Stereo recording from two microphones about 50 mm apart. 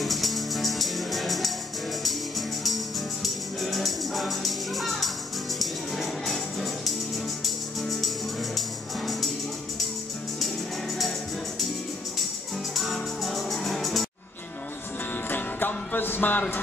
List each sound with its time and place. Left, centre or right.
0.0 s music: centre
12.7 s music: centre
15.2 s music: left